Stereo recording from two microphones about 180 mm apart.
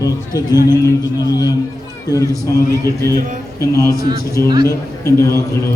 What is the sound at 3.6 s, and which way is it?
Mantra, 15° left (ahead or behind).